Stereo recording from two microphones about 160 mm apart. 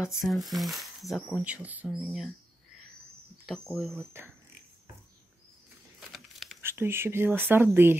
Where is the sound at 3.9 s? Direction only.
15° right (ahead or behind).